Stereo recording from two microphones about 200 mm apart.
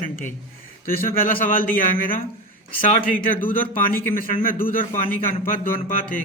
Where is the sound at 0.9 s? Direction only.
45° left (ahead or behind).